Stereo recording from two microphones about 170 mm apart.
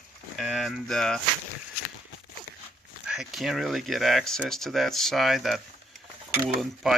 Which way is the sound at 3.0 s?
5° right (ahead or behind).